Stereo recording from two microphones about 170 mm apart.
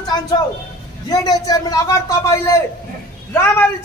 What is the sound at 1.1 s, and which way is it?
A man's voice, 20° left (ahead or behind).